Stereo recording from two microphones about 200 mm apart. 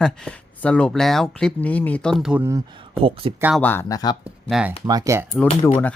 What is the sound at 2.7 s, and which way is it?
Speech, 25° right (ahead or behind).